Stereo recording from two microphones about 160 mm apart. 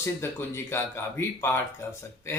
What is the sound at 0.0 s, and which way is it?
Speech, 15° left (ahead or behind).